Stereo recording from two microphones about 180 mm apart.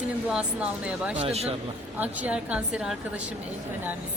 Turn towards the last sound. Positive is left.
turn(degrees=-5)  # may be behind; listen again after turning